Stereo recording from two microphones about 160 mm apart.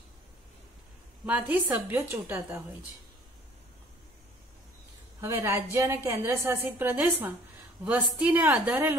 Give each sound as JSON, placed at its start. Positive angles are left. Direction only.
{"t": 1.2, "sound": "a woman's voice", "side_deg": -10}
{"t": 5.2, "sound": "a woman's voice", "side_deg": -15}